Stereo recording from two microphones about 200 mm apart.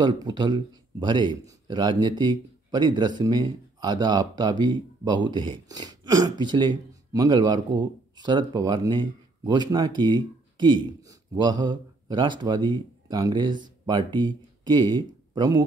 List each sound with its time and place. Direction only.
0.0 s speech: 20° right (ahead or behind)